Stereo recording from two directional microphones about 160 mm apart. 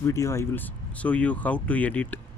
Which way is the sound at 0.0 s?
20° left (ahead or behind).